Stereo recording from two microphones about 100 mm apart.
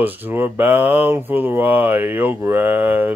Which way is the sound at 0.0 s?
20° right (ahead or behind).